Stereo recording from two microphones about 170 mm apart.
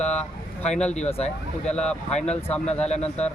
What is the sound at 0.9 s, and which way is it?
Speech, 40° left (ahead or behind).